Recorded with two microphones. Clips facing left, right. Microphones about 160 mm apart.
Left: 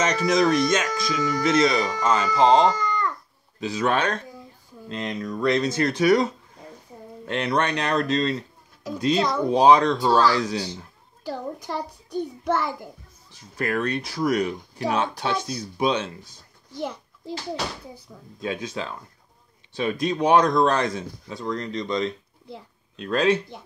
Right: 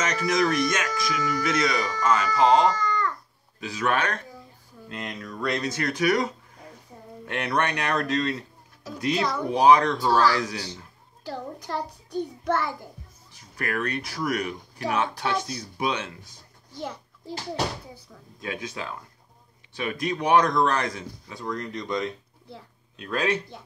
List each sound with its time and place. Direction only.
0.0 s a child's voice: 20° left (ahead or behind)
7.3 s a child's voice: 20° left (ahead or behind)
18.4 s a child's voice: 25° left (ahead or behind)
21.7 s speech: 10° right (ahead or behind)
23.1 s a child's voice: 25° left (ahead or behind)